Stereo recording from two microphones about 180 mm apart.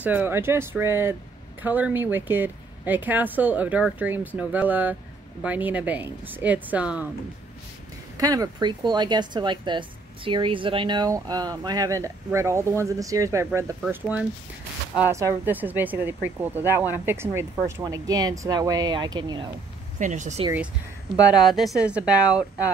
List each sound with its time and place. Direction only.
0.0 s speech: 10° right (ahead or behind)
8.2 s speech: 20° right (ahead or behind)
15.0 s speech: 15° right (ahead or behind)
20.0 s speech: 40° right (ahead or behind)
21.3 s speech: centre (ahead or behind)